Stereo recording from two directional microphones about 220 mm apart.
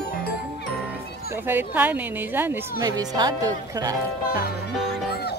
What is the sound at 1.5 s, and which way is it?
A woman's voice, 10° right (ahead or behind).